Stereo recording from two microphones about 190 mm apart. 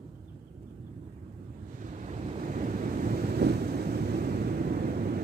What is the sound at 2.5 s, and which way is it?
Vehicle, 45° right (ahead or behind).